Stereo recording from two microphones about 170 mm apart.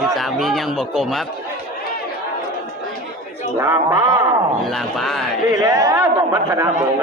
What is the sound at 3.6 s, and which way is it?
Speech, 15° right (ahead or behind).